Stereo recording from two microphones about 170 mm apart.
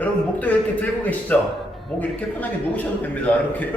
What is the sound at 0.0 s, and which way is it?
A man's voice, 10° left (ahead or behind).